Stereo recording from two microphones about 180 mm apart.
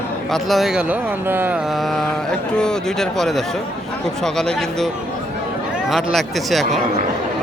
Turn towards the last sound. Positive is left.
turn(degrees=0)  # may be behind; listen again after turning